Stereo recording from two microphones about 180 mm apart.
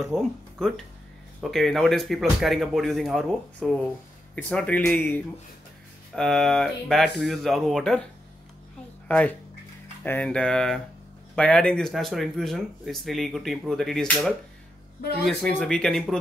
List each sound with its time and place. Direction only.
0.0 s speech: centre (ahead or behind)
9.0 s speech: 10° left (ahead or behind)